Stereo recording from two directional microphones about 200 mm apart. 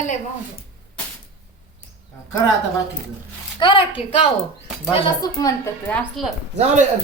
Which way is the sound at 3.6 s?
25° left (ahead or behind).